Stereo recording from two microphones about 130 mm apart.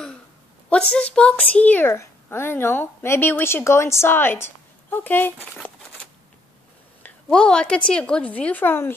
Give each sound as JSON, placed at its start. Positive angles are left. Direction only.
{"t": 0.7, "sound": "a woman's voice", "side_deg": 10}
{"t": 7.0, "sound": "a woman's voice", "side_deg": 10}